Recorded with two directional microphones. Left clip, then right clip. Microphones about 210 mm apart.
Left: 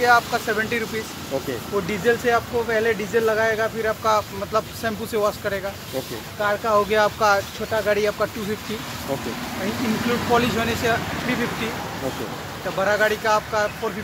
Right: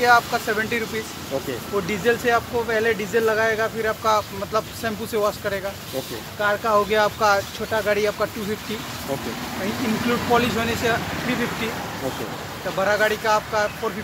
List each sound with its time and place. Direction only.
0.0 s speech: centre (ahead or behind)
1.9 s speech: 5° right (ahead or behind)
10.3 s speech: centre (ahead or behind)
12.6 s speech: 5° right (ahead or behind)